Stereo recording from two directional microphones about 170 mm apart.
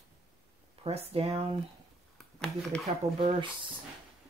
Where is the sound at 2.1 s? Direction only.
5° left (ahead or behind).